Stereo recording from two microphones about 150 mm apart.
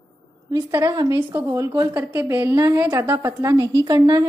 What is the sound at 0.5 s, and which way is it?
A woman's voice, 20° right (ahead or behind).